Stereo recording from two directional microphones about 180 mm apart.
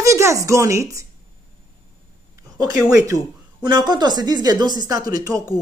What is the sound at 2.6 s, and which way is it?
Speech, 20° right (ahead or behind).